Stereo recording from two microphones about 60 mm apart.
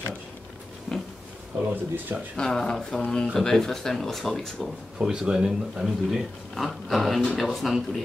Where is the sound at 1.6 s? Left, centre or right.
Right.